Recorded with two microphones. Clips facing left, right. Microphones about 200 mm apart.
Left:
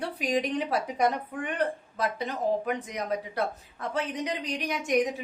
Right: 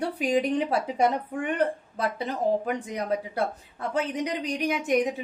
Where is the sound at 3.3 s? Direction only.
25° right (ahead or behind).